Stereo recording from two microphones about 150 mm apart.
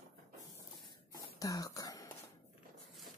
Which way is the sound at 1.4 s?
25° left (ahead or behind).